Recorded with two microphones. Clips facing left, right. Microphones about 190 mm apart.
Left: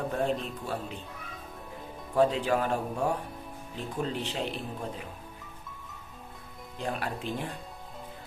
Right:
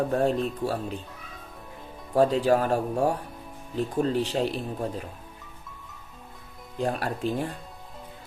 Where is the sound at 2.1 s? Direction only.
40° right (ahead or behind).